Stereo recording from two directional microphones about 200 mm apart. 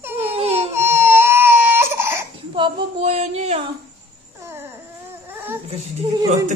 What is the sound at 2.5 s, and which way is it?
Female singing, 25° right (ahead or behind).